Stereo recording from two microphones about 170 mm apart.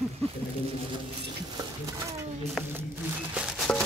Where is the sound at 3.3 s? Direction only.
5° right (ahead or behind).